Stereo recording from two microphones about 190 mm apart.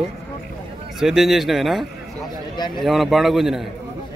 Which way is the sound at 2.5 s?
25° left (ahead or behind).